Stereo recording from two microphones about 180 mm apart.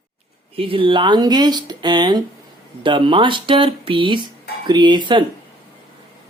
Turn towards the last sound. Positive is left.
turn(degrees=-25)  # may be behind; listen again after turning